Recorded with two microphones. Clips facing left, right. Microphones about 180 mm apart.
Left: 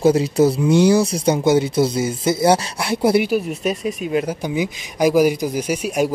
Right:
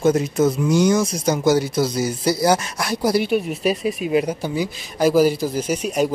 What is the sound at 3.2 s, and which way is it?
Speech, centre (ahead or behind).